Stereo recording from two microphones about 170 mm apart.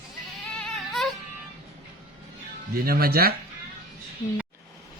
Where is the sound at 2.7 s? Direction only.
60° right (ahead or behind).